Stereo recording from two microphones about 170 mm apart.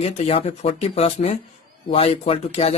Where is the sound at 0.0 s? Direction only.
35° left (ahead or behind).